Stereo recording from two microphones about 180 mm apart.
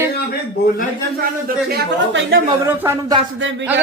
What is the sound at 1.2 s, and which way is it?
Speech, 60° right (ahead or behind).